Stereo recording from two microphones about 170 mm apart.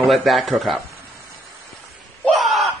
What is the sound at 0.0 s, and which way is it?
Speech, centre (ahead or behind).